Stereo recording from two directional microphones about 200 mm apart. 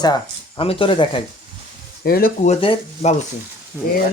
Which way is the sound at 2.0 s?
45° left (ahead or behind).